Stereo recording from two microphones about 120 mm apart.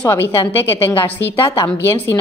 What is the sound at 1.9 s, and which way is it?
Speech, 20° left (ahead or behind).